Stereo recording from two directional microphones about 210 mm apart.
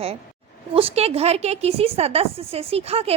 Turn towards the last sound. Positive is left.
turn(degrees=-30)  # may be behind; listen again after turning